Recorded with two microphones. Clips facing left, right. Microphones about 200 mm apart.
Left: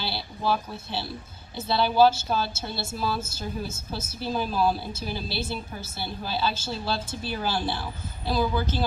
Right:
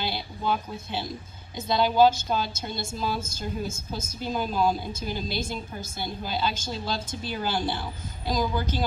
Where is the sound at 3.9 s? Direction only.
10° left (ahead or behind).